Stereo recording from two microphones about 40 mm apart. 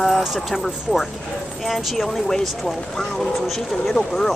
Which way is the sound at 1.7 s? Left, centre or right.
Centre.